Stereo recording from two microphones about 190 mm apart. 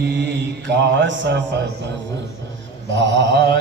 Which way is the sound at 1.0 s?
70° right (ahead or behind).